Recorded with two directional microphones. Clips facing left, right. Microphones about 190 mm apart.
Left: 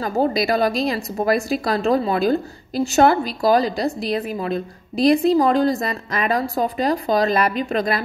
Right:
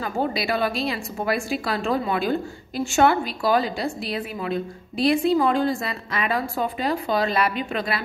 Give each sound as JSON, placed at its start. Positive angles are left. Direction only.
{"t": 0.0, "sound": "a woman's voice", "side_deg": 40}